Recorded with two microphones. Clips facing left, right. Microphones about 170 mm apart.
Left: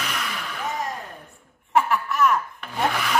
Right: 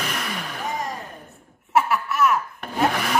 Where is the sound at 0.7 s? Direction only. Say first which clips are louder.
Even; centre (ahead or behind).